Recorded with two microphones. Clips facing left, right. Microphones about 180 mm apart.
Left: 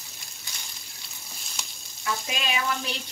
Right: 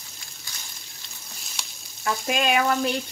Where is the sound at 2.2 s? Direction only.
55° right (ahead or behind).